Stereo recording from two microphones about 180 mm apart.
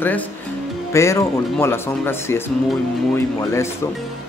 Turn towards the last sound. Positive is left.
turn(degrees=15)  # may be behind; listen again after turning